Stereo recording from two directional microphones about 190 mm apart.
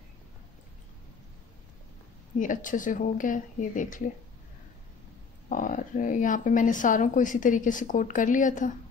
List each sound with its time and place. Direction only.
2.3 s a woman's voice: 45° left (ahead or behind)
5.5 s a woman's voice: 45° left (ahead or behind)